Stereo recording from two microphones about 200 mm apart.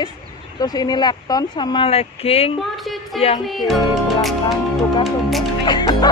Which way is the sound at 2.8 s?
Centre (ahead or behind).